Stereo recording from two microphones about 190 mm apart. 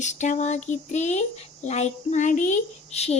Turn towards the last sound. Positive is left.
turn(degrees=35)  # may be behind; listen again after turning